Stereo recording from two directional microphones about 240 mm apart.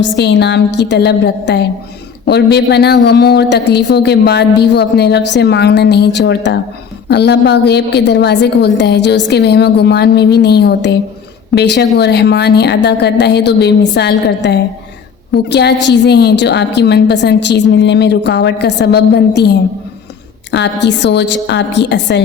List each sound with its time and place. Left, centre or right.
0.0 s a woman's voice: left